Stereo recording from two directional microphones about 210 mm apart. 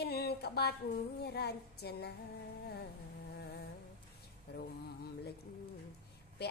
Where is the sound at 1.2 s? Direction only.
50° left (ahead or behind).